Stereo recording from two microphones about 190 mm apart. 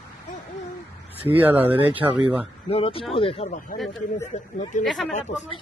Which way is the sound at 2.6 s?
30° left (ahead or behind).